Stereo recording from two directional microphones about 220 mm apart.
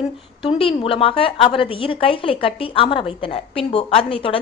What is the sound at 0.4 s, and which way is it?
A woman's voice, 25° left (ahead or behind).